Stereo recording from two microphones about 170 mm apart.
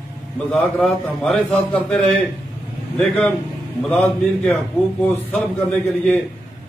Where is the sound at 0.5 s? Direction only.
5° left (ahead or behind).